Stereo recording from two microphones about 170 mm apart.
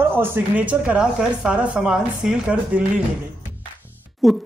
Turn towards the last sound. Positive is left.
turn(degrees=0)  # may be behind; listen again after turning